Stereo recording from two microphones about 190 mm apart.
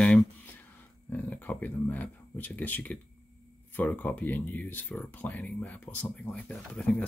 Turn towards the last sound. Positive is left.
turn(degrees=5)  # may be behind; listen again after turning